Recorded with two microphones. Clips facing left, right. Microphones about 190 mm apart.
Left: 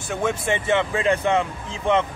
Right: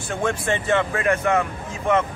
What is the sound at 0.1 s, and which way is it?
A man's voice, 15° left (ahead or behind).